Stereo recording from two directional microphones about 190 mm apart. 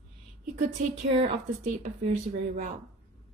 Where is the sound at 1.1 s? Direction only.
40° right (ahead or behind).